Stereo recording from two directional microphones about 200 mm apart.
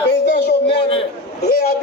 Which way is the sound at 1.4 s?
50° left (ahead or behind).